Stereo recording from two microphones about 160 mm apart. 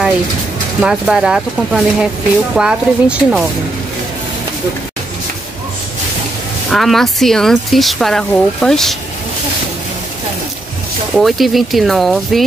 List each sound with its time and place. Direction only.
0.7 s speech: 5° right (ahead or behind)
6.7 s speech: centre (ahead or behind)
11.1 s speech: centre (ahead or behind)